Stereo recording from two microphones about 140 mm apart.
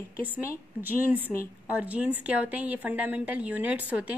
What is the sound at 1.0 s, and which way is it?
A woman's voice, 15° right (ahead or behind).